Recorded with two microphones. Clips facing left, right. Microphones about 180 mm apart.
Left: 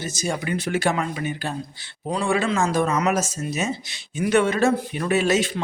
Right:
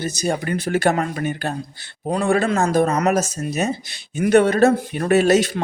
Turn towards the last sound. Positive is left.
turn(degrees=-40)  # may be behind; listen again after turning